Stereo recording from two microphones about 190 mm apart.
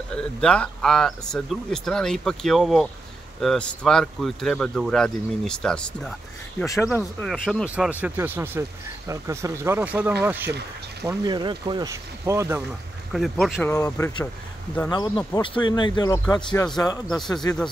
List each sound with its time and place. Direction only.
0.1 s speech: 5° left (ahead or behind)
6.6 s speech: 15° left (ahead or behind)
7.0 s speech: centre (ahead or behind)
11.1 s speech: 25° right (ahead or behind)
13.1 s speech: centre (ahead or behind)
13.7 s speech: 15° left (ahead or behind)
17.2 s speech: centre (ahead or behind)